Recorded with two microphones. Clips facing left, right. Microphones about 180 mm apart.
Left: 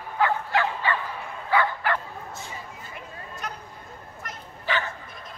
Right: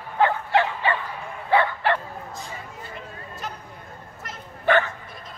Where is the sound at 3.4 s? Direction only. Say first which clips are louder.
Right 1 dB; centre (ahead or behind).